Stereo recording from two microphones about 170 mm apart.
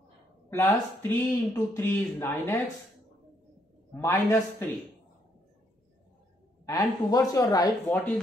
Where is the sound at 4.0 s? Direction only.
15° left (ahead or behind).